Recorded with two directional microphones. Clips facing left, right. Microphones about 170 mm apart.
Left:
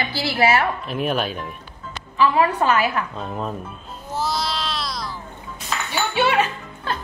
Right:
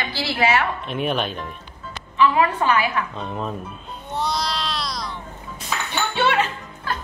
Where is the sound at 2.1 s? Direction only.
35° left (ahead or behind).